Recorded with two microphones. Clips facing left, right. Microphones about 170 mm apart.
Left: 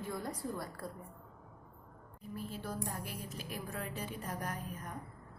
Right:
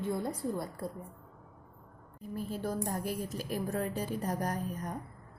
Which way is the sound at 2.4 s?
45° right (ahead or behind).